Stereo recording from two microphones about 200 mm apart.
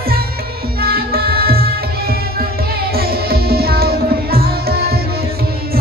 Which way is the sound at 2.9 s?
50° right (ahead or behind).